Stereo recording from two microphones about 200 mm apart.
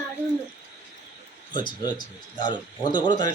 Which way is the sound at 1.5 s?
20° left (ahead or behind).